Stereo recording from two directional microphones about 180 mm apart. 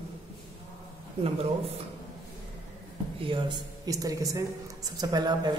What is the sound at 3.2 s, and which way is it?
A woman's voice, 25° right (ahead or behind).